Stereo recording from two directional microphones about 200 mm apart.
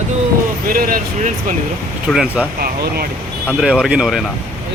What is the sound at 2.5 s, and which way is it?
Speech, 50° right (ahead or behind).